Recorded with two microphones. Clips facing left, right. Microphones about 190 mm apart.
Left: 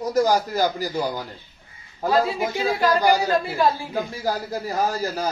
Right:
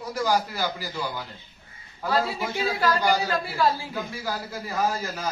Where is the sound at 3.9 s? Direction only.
40° left (ahead or behind).